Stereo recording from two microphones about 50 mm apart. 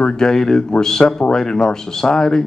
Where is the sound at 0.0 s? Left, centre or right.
Centre.